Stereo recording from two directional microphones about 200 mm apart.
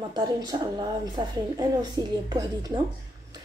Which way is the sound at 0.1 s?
20° right (ahead or behind).